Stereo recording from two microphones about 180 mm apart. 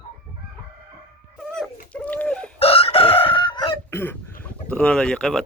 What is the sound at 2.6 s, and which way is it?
Chicken, 30° left (ahead or behind).